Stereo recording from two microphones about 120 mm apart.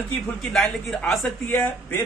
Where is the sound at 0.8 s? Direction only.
Centre (ahead or behind).